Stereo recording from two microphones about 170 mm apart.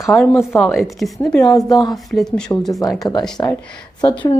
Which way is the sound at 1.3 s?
20° left (ahead or behind).